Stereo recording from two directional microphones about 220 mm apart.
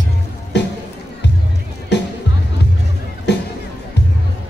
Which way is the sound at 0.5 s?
50° left (ahead or behind).